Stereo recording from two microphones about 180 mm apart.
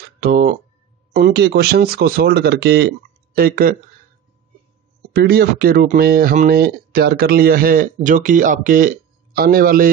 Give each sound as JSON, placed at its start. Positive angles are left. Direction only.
{"t": 0.2, "sound": "speech", "side_deg": -50}
{"t": 3.3, "sound": "speech", "side_deg": -55}
{"t": 5.1, "sound": "speech", "side_deg": -65}